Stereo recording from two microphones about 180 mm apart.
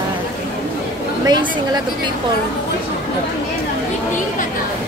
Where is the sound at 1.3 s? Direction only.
25° right (ahead or behind).